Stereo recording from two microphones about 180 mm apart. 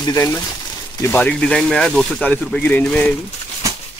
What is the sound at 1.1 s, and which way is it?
Speech, 5° left (ahead or behind).